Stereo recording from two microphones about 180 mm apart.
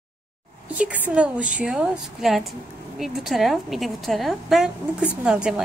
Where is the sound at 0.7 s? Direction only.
10° right (ahead or behind).